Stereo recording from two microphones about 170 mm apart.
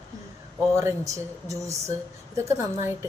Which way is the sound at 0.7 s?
20° right (ahead or behind).